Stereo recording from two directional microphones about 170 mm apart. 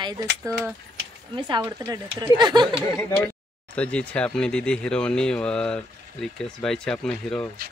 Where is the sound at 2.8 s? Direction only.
15° left (ahead or behind).